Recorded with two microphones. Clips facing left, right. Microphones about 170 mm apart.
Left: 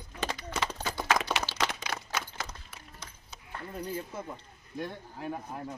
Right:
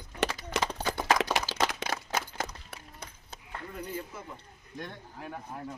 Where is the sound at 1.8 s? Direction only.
50° right (ahead or behind).